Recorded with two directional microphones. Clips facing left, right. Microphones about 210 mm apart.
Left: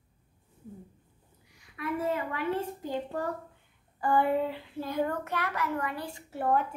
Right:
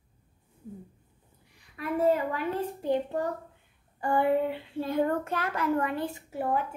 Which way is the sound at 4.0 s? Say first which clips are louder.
Right 1 dB; 25° right (ahead or behind).